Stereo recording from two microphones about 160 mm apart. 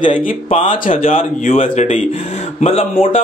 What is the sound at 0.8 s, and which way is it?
Speech, 55° left (ahead or behind).